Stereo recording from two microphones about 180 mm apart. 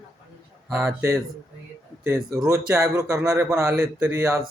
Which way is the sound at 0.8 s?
15° right (ahead or behind).